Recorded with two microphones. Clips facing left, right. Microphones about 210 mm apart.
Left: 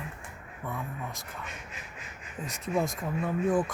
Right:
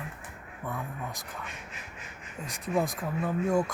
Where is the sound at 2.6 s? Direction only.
Centre (ahead or behind).